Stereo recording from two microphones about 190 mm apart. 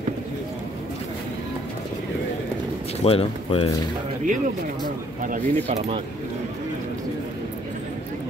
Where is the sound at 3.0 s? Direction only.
30° left (ahead or behind).